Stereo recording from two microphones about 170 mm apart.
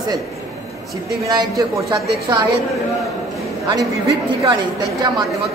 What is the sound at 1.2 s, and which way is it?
A woman's voice, 25° right (ahead or behind).